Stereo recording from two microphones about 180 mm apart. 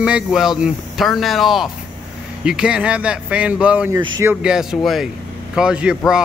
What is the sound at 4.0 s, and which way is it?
Speech, 25° right (ahead or behind).